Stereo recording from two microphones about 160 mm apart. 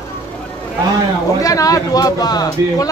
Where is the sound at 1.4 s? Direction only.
20° left (ahead or behind).